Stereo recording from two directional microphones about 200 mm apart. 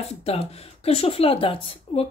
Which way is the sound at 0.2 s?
30° left (ahead or behind).